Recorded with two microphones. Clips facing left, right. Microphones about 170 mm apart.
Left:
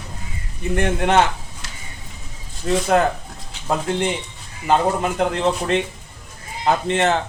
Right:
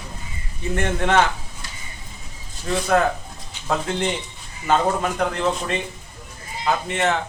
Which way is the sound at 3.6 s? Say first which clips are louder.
Left 2 dB; 10° left (ahead or behind).